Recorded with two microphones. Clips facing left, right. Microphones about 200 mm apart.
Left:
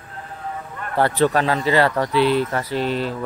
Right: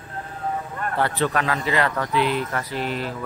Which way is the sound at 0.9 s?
40° left (ahead or behind).